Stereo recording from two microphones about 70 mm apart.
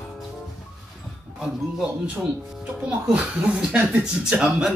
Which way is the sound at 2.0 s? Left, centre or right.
Centre.